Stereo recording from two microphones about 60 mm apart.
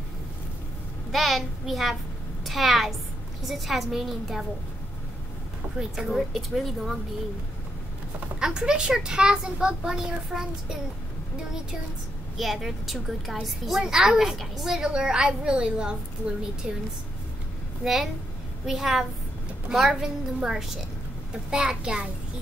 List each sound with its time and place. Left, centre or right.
1.1 s a child's voice: centre
5.8 s a child's voice: centre
8.4 s a child's voice: centre
12.4 s a child's voice: centre
14.8 s a child's voice: centre
17.8 s a child's voice: centre